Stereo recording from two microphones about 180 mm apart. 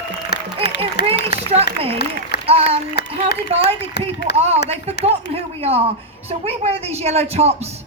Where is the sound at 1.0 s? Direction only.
65° left (ahead or behind).